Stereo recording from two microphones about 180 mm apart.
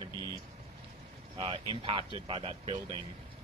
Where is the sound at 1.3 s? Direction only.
30° right (ahead or behind).